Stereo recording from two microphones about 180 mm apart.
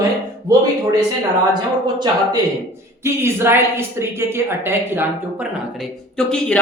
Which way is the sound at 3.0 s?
15° right (ahead or behind).